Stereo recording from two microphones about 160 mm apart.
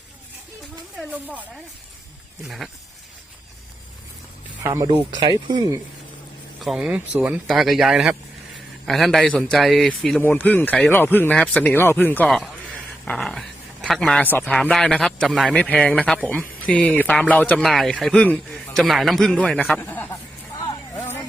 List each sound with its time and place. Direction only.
0.9 s speech: 10° right (ahead or behind)
4.6 s speech: 20° right (ahead or behind)
4.9 s speech: 30° right (ahead or behind)
6.6 s a man's voice: centre (ahead or behind)